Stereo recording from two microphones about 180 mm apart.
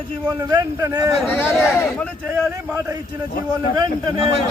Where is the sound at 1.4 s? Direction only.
10° left (ahead or behind).